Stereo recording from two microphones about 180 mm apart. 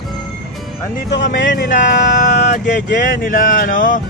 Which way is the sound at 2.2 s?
45° left (ahead or behind).